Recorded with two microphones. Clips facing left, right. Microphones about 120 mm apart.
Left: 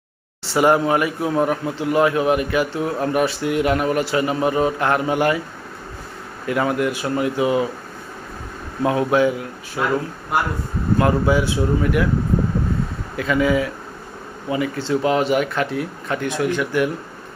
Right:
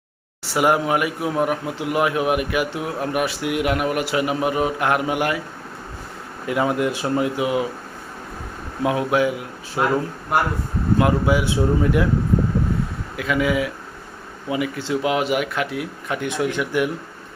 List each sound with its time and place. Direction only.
0.4 s a man's voice: 10° right (ahead or behind)
6.5 s speech: 20° right (ahead or behind)
7.3 s a man's voice: 10° right (ahead or behind)
8.8 s a man's voice: 10° right (ahead or behind)
10.9 s a man's voice: 10° right (ahead or behind)
11.4 s speech: 25° right (ahead or behind)
13.1 s a man's voice: 5° right (ahead or behind)